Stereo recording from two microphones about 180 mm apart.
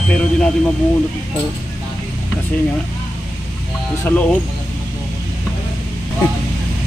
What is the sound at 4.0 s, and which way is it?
Speech, 10° left (ahead or behind).